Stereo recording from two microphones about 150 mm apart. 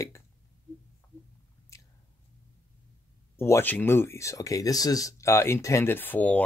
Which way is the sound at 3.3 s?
15° left (ahead or behind).